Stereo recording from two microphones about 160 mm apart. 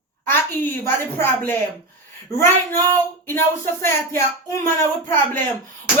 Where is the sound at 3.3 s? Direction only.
15° left (ahead or behind).